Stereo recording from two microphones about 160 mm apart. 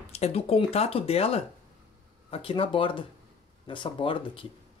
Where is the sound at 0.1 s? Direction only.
40° left (ahead or behind).